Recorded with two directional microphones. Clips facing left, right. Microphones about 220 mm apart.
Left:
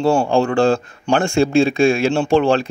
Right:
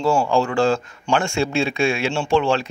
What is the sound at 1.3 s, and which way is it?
A man's voice, 50° left (ahead or behind).